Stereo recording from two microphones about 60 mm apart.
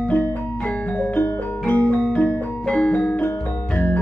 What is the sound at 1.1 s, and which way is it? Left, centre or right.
Music, left.